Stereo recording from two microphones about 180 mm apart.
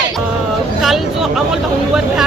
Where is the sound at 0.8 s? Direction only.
Centre (ahead or behind).